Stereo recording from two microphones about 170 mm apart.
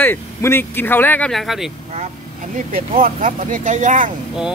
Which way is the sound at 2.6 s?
55° right (ahead or behind).